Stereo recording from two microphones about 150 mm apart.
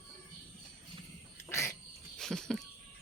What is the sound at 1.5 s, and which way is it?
Bird, 20° left (ahead or behind).